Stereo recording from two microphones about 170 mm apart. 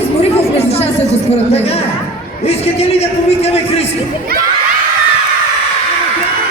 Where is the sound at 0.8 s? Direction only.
40° left (ahead or behind).